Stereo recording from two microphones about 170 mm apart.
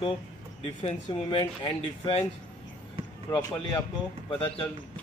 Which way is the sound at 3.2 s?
15° left (ahead or behind).